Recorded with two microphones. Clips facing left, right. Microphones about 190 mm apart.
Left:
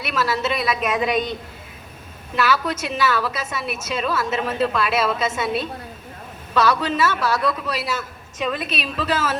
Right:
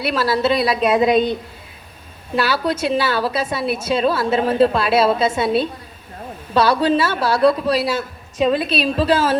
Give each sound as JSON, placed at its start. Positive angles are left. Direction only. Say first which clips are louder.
{"t": 0.0, "sound": "a woman's voice", "louder": "right 5 dB", "side_deg": -30}
{"t": 2.3, "sound": "a woman's voice", "louder": "right 2 dB", "side_deg": -30}